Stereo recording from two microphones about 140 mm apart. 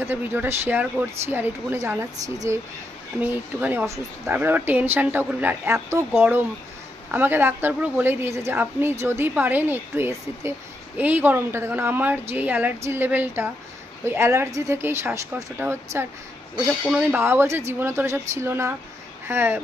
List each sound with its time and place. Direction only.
0.0 s speech: 15° right (ahead or behind)
3.2 s a woman's voice: 15° right (ahead or behind)
16.8 s speech: 5° right (ahead or behind)
17.2 s speech: 15° right (ahead or behind)